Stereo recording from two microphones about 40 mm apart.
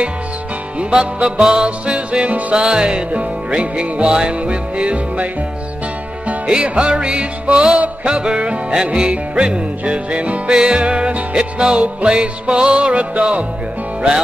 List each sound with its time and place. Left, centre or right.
0.7 s music: right
6.6 s music: right
10.5 s music: right